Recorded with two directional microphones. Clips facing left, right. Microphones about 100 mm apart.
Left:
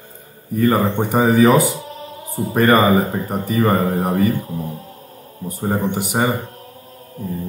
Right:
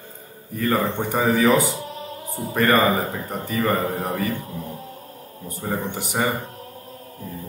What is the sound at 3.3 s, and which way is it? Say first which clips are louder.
Speech: left 6 dB; 15° left (ahead or behind).